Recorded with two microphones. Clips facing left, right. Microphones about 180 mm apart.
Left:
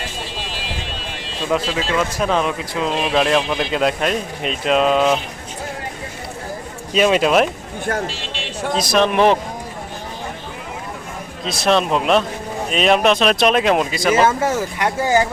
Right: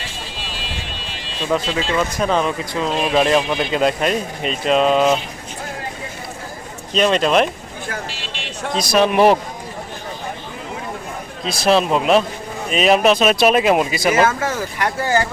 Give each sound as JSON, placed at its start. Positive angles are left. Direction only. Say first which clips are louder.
{"t": 1.5, "sound": "speech", "louder": "even", "side_deg": 5}
{"t": 6.9, "sound": "speech", "louder": "left 1 dB", "side_deg": 5}
{"t": 8.6, "sound": "speech", "louder": "right 1 dB", "side_deg": 0}
{"t": 11.4, "sound": "speech", "louder": "right 1 dB", "side_deg": 0}
{"t": 14.8, "sound": "speech", "louder": "left 1 dB", "side_deg": 20}